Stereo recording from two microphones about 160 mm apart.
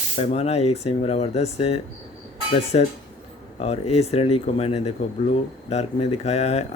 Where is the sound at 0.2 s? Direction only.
40° left (ahead or behind).